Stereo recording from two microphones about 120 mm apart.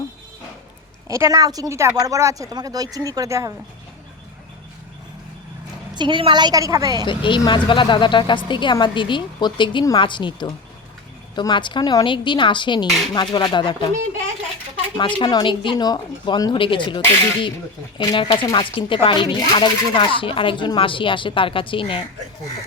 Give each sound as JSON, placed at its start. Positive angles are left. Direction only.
{"t": 1.0, "sound": "a woman's voice", "side_deg": -25}
{"t": 5.9, "sound": "a woman's voice", "side_deg": -40}
{"t": 7.1, "sound": "speech", "side_deg": 45}
{"t": 14.9, "sound": "speech", "side_deg": 40}